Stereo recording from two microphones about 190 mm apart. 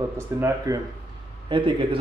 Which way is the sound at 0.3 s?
15° right (ahead or behind).